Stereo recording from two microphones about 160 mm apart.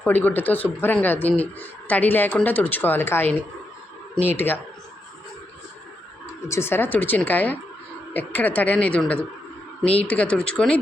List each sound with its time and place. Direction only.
0.0 s speech: 10° left (ahead or behind)
6.5 s speech: 15° left (ahead or behind)